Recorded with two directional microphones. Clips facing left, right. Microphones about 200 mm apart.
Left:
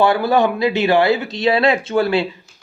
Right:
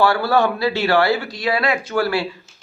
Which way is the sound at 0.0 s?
20° left (ahead or behind).